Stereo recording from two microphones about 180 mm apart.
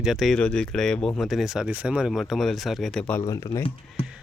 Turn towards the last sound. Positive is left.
turn(degrees=20)  # may be behind; listen again after turning